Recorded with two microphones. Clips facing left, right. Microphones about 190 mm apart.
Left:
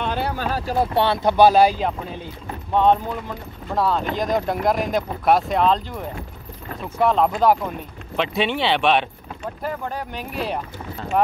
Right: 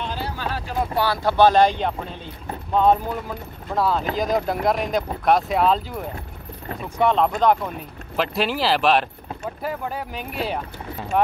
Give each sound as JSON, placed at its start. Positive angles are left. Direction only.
{"t": 0.0, "sound": "a sound", "side_deg": 60}
{"t": 0.5, "sound": "speech", "side_deg": 40}
{"t": 0.9, "sound": "speech", "side_deg": 25}
{"t": 1.3, "sound": "speech", "side_deg": 10}